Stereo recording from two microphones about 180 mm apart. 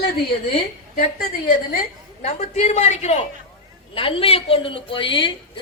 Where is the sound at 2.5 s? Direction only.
40° left (ahead or behind).